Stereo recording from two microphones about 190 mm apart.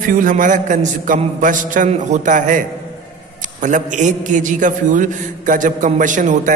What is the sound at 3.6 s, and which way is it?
A man's voice, 40° right (ahead or behind).